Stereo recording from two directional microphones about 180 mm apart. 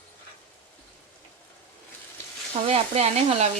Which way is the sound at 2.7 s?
35° right (ahead or behind).